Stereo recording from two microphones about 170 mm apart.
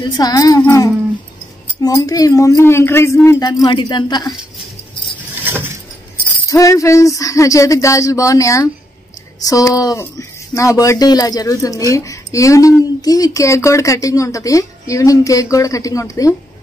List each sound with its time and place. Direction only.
0.2 s speech: 20° left (ahead or behind)
0.6 s a sound: 15° left (ahead or behind)
1.8 s speech: 20° left (ahead or behind)
5.4 s vehicle: 10° right (ahead or behind)
6.5 s speech: 20° left (ahead or behind)